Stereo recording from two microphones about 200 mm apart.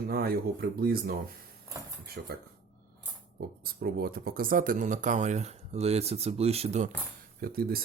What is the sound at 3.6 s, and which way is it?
Speech, 50° right (ahead or behind).